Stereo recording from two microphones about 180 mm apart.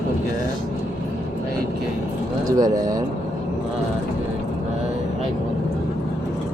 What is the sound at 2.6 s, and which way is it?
Speech, 20° right (ahead or behind).